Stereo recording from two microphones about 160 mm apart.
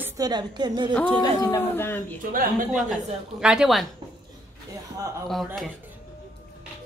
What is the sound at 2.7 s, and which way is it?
A woman's voice, centre (ahead or behind).